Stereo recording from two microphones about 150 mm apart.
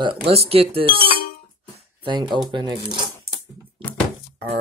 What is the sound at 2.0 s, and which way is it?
Speech, 30° right (ahead or behind).